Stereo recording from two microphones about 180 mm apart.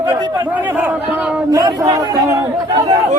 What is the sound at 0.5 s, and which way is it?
Speech, 10° right (ahead or behind).